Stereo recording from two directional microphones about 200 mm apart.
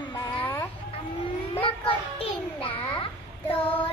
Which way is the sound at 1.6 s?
25° left (ahead or behind).